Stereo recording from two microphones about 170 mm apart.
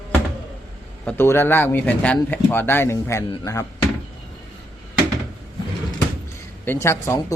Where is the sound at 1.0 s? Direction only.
15° left (ahead or behind).